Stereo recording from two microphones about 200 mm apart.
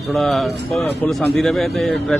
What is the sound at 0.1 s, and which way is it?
Speech, centre (ahead or behind).